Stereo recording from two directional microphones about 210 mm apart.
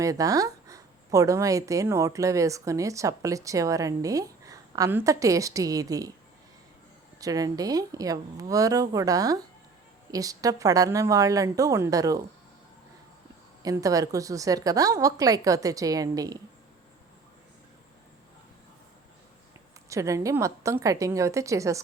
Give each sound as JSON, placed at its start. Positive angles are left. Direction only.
{"t": 0.0, "sound": "speech", "side_deg": -15}
{"t": 7.2, "sound": "speech", "side_deg": -15}
{"t": 13.6, "sound": "speech", "side_deg": -15}
{"t": 19.9, "sound": "speech", "side_deg": -15}